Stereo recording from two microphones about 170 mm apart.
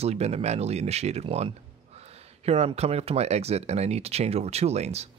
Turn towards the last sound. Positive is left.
turn(degrees=-40)  # may be behind; listen again after turning